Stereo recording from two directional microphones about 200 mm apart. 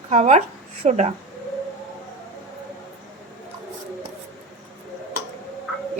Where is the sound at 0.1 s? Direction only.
35° right (ahead or behind).